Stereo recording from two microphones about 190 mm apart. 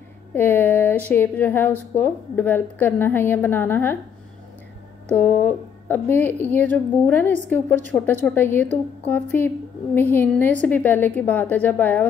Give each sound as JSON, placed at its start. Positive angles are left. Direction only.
{"t": 0.3, "sound": "a woman's voice", "side_deg": 10}
{"t": 5.1, "sound": "a woman's voice", "side_deg": 10}